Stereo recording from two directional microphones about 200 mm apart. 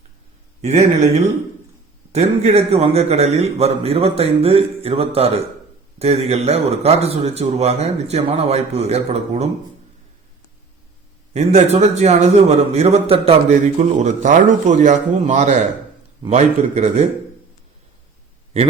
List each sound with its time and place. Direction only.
2.1 s a man's voice: 30° right (ahead or behind)
11.3 s a man's voice: 30° right (ahead or behind)